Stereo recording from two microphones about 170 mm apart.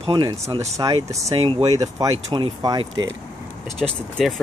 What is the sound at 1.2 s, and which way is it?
Speech, 30° right (ahead or behind).